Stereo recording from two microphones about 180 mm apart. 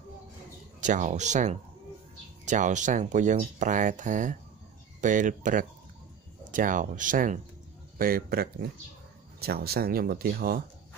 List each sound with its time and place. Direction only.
0.7 s speech: 45° right (ahead or behind)